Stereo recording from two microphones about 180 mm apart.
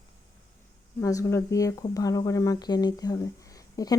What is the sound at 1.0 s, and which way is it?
Speech, 20° left (ahead or behind).